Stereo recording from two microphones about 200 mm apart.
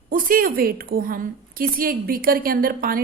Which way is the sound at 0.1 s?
45° right (ahead or behind).